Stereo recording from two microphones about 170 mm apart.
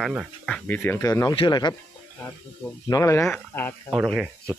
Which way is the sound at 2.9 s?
20° left (ahead or behind).